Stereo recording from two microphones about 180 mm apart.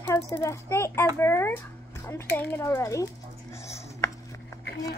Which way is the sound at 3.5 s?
15° left (ahead or behind).